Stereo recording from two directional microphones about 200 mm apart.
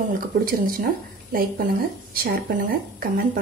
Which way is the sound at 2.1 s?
45° right (ahead or behind).